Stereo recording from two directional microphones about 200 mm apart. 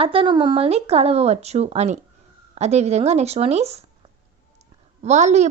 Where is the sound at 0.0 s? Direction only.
25° right (ahead or behind).